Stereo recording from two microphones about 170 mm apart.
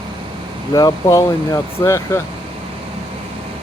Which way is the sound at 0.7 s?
25° left (ahead or behind).